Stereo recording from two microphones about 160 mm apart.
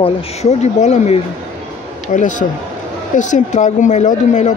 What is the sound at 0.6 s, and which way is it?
Speech, 45° left (ahead or behind).